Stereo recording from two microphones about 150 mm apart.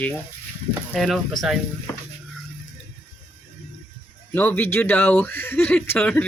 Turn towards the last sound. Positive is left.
turn(degrees=10)  # may be behind; listen again after turning